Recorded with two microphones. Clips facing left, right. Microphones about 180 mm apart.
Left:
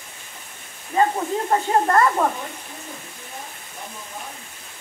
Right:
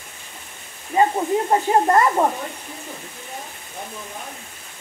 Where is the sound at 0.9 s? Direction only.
10° right (ahead or behind).